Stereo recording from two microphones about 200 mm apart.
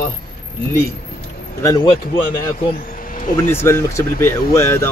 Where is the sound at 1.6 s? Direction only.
20° left (ahead or behind).